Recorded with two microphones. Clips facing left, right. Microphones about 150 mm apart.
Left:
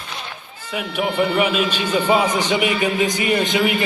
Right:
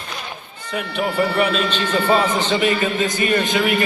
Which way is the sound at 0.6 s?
5° left (ahead or behind).